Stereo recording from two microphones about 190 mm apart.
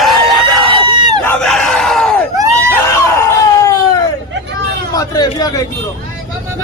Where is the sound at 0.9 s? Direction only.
25° right (ahead or behind).